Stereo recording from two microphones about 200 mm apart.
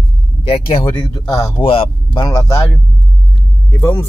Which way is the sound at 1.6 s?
30° left (ahead or behind).